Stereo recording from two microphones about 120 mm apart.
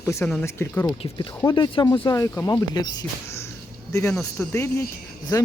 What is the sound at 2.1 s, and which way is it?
Speech, 20° left (ahead or behind).